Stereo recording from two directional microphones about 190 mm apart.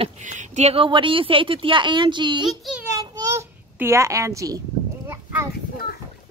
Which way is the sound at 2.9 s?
15° right (ahead or behind).